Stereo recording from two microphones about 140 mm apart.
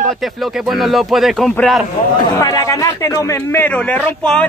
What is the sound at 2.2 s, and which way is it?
Speech, 25° left (ahead or behind).